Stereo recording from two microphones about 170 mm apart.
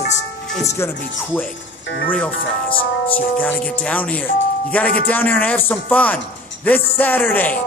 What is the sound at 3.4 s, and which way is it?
Speech, 10° left (ahead or behind).